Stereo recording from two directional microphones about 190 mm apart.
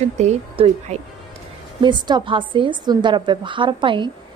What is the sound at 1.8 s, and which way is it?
A woman's voice, 25° right (ahead or behind).